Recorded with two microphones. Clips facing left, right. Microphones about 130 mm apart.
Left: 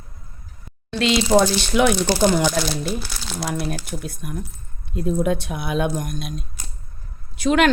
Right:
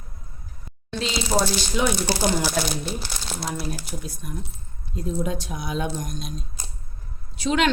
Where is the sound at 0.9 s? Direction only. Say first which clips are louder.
Left 7 dB; 65° left (ahead or behind).